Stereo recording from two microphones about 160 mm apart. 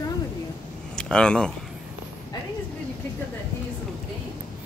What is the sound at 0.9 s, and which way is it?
Speech, 5° left (ahead or behind).